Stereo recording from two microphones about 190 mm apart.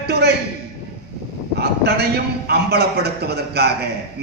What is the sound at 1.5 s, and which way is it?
A man's voice, 60° right (ahead or behind).